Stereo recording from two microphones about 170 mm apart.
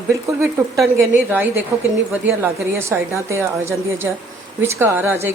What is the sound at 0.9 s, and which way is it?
A woman's voice, 10° right (ahead or behind).